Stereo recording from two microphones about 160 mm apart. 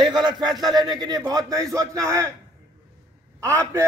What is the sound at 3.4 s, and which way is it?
Speech, 20° right (ahead or behind).